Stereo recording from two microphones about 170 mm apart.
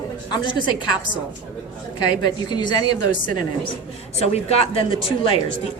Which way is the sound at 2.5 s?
25° left (ahead or behind).